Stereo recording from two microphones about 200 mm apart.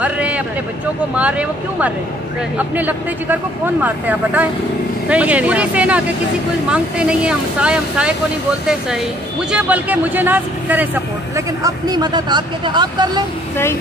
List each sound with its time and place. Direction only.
0.0 s a sound: 5° right (ahead or behind)
2.5 s speech: 10° right (ahead or behind)
9.5 s speech: 5° right (ahead or behind)